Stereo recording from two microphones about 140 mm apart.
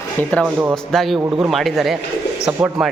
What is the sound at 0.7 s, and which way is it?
A man's voice, centre (ahead or behind).